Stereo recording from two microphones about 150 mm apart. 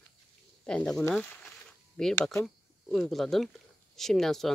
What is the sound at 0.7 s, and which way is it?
Speech, 5° left (ahead or behind).